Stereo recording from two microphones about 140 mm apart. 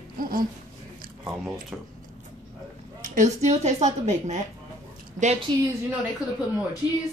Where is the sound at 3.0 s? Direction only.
60° right (ahead or behind).